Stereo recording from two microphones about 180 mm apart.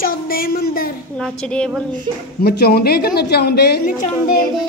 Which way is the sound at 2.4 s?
60° left (ahead or behind).